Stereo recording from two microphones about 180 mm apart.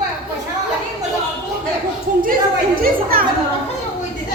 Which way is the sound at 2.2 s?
55° right (ahead or behind).